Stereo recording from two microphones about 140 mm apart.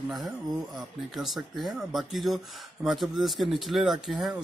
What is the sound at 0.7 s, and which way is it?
Speech, centre (ahead or behind).